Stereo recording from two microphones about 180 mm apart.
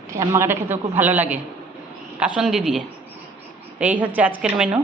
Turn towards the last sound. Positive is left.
turn(degrees=-10)  # may be behind; listen again after turning